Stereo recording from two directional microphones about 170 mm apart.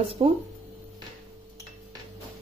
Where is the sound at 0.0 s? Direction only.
35° right (ahead or behind).